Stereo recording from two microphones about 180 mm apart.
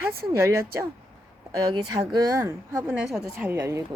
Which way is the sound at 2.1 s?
20° right (ahead or behind).